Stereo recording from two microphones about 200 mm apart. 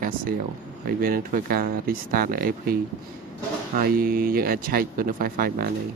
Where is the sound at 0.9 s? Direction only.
45° right (ahead or behind).